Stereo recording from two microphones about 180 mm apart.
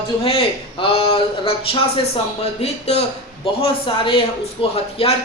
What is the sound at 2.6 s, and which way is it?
A man's voice, 35° left (ahead or behind).